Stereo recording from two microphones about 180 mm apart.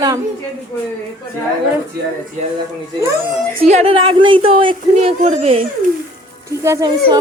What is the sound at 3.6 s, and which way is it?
Speech, 35° right (ahead or behind).